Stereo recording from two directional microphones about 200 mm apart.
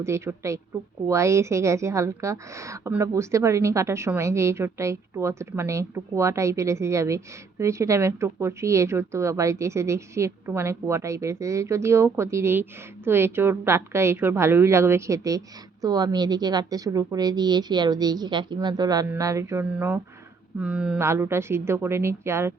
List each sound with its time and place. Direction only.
0.0 s a woman's voice: 15° right (ahead or behind)